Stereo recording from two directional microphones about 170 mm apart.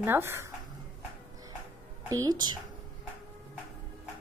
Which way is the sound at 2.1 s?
25° right (ahead or behind).